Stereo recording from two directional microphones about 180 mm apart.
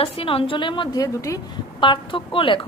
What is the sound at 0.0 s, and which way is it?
A woman's voice, 30° left (ahead or behind).